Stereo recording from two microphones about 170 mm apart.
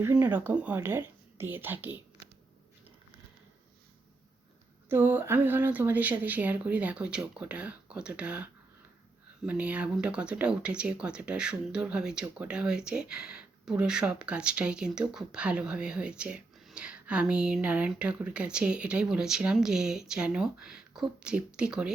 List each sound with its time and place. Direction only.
0.0 s speech: 10° right (ahead or behind)
4.9 s speech: 10° right (ahead or behind)